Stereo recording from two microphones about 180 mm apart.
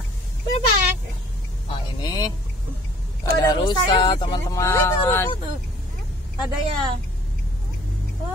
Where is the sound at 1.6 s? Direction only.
20° left (ahead or behind).